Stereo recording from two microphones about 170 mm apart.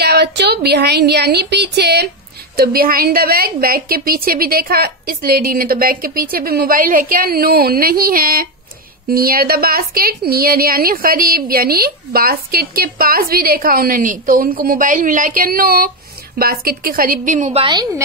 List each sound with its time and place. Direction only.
0.0 s a woman's voice: 75° right (ahead or behind)
2.5 s a woman's voice: 60° right (ahead or behind); by 18.0 s 25° right (ahead or behind)